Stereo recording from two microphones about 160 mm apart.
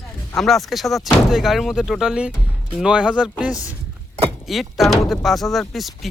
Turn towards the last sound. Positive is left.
turn(degrees=0)  # may be behind; listen again after turning